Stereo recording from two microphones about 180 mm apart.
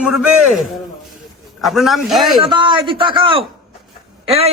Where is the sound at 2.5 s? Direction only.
25° right (ahead or behind).